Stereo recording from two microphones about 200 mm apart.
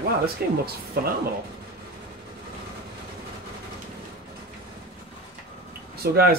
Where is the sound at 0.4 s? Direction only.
50° right (ahead or behind).